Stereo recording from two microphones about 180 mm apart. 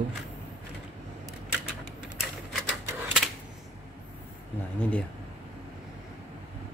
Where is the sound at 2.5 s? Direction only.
Centre (ahead or behind).